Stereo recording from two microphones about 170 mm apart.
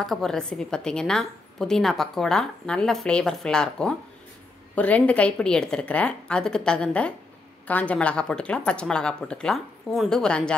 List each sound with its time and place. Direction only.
0.0 s a woman's voice: centre (ahead or behind)